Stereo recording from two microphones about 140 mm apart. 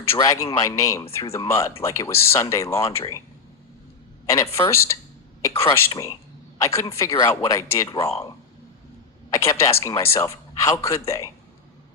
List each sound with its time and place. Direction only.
0.1 s a man's voice: 20° left (ahead or behind)
4.3 s a man's voice: 20° left (ahead or behind)
9.3 s a man's voice: 20° left (ahead or behind)